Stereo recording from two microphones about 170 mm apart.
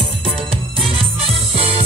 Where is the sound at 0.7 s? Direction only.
35° right (ahead or behind).